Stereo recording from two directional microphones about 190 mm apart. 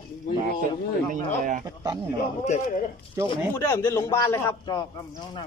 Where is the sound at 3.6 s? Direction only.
15° left (ahead or behind).